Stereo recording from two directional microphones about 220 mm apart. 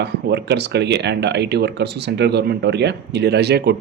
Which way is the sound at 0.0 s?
50° right (ahead or behind).